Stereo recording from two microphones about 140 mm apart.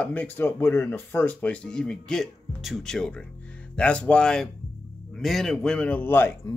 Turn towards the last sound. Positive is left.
turn(degrees=15)  # may be behind; listen again after turning